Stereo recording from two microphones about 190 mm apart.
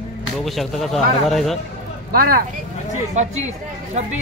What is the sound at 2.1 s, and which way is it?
Speech, 50° right (ahead or behind).